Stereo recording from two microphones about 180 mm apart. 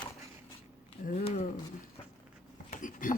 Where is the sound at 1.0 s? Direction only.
60° left (ahead or behind).